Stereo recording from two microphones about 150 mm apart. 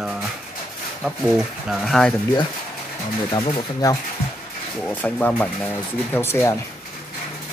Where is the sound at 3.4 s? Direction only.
35° left (ahead or behind).